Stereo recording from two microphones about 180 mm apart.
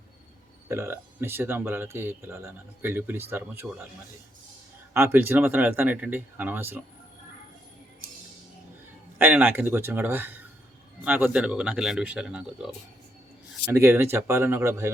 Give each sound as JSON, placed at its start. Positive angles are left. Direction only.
{"t": 0.7, "sound": "speech", "side_deg": -15}
{"t": 4.9, "sound": "speech", "side_deg": -15}
{"t": 9.1, "sound": "speech", "side_deg": -10}
{"t": 13.7, "sound": "speech", "side_deg": -15}